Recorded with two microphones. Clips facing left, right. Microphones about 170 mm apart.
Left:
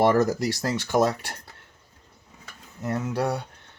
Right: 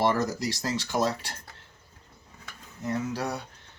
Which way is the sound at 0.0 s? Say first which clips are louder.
Left 6 dB; 55° left (ahead or behind).